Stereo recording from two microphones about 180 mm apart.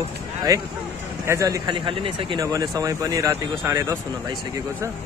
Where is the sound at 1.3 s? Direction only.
20° right (ahead or behind).